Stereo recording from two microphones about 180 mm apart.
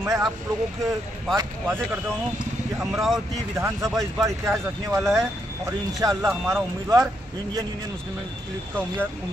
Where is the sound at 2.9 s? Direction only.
Centre (ahead or behind).